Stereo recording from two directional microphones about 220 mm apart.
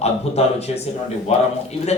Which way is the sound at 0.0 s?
30° left (ahead or behind).